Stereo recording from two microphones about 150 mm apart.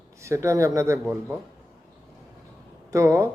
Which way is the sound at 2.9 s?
20° right (ahead or behind).